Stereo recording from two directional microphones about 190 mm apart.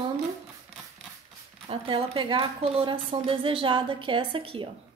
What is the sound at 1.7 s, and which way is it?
A woman's voice, 25° right (ahead or behind).